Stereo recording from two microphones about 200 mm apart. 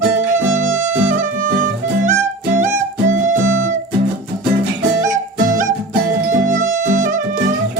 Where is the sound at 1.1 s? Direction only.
40° right (ahead or behind).